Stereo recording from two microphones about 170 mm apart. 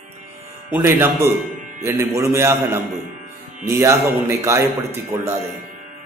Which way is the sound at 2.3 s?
15° right (ahead or behind).